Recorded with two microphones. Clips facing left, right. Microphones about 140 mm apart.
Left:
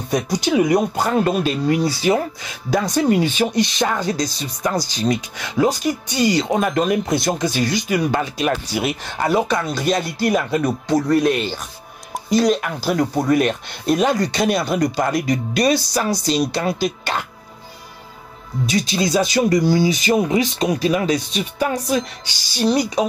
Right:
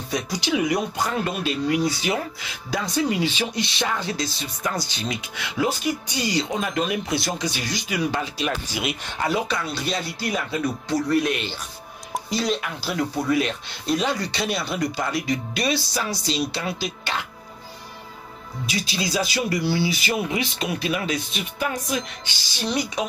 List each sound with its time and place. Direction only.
0.1 s speech: 45° left (ahead or behind)
18.7 s speech: 45° left (ahead or behind)